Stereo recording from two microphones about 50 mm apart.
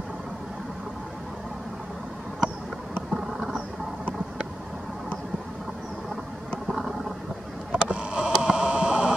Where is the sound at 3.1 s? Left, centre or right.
Centre.